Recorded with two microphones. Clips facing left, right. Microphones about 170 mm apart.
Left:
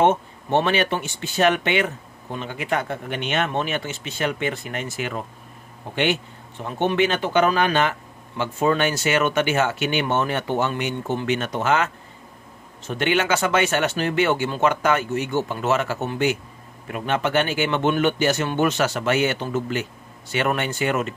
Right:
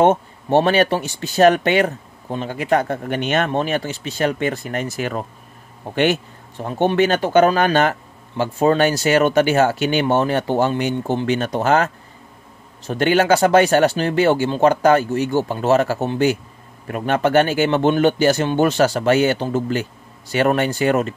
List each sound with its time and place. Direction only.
0.0 s speech: 35° right (ahead or behind)
6.6 s speech: 40° right (ahead or behind)